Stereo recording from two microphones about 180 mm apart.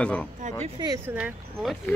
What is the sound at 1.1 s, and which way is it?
Speech, 5° right (ahead or behind).